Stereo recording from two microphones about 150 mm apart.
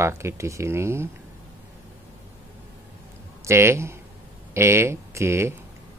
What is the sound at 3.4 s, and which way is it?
Speech, 15° right (ahead or behind).